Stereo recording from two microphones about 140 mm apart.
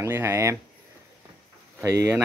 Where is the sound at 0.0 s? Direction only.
20° right (ahead or behind).